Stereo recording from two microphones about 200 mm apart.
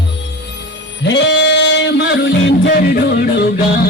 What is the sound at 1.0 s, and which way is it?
Music, 65° left (ahead or behind).